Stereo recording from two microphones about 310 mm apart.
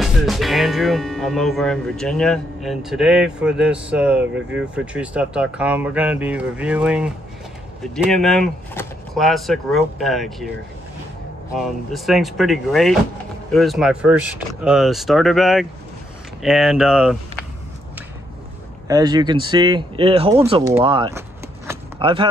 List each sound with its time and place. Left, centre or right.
0.0 s speech: centre
11.5 s speech: centre
18.9 s speech: centre
21.6 s a sound: centre